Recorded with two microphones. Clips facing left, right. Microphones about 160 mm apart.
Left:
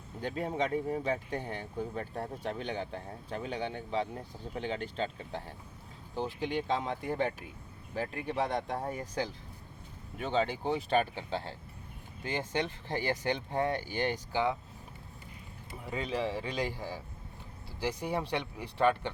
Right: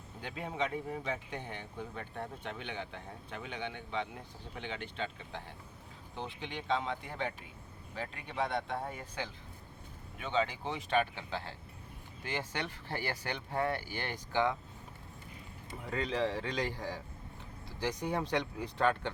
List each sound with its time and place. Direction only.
0.2 s speech: 40° left (ahead or behind); by 14.5 s 15° left (ahead or behind)
15.9 s speech: 10° left (ahead or behind)